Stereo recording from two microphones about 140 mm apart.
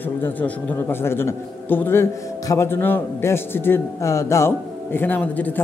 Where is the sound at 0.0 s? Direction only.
15° left (ahead or behind).